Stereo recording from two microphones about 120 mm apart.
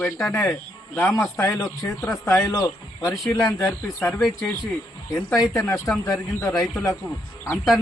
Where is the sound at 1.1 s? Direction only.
25° left (ahead or behind).